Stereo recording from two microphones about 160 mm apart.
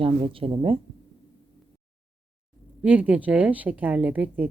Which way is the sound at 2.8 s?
10° right (ahead or behind).